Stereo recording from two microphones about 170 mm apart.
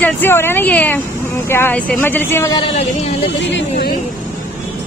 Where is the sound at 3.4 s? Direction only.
90° left.